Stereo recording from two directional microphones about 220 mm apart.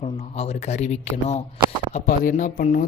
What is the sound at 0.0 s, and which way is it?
Speech, 30° left (ahead or behind).